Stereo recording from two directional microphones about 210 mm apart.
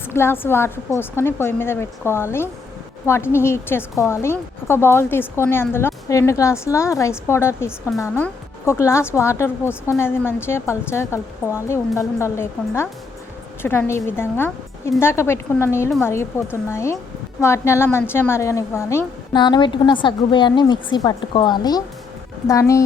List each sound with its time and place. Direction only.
0.1 s a woman's voice: 10° left (ahead or behind)